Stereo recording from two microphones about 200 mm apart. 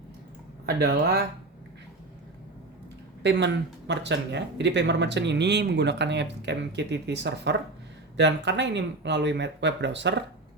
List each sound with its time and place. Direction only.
0.6 s speech: 55° right (ahead or behind)
3.2 s speech: 60° right (ahead or behind)